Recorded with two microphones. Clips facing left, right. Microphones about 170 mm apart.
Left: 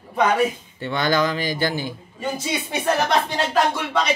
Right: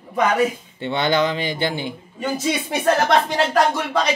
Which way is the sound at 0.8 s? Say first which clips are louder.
Right 1 dB; 25° right (ahead or behind).